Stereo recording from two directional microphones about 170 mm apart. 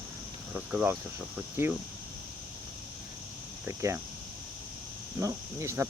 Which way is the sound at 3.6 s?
15° right (ahead or behind).